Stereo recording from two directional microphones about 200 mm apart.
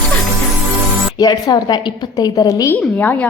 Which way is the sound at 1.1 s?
20° left (ahead or behind).